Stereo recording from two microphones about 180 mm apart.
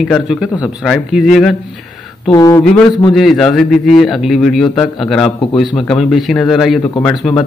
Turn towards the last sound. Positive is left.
turn(degrees=5)  # may be behind; listen again after turning